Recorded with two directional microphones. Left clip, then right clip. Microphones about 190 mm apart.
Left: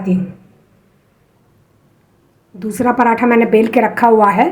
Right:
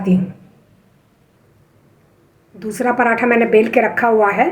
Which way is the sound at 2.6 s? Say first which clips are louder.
Left 2 dB; 40° left (ahead or behind).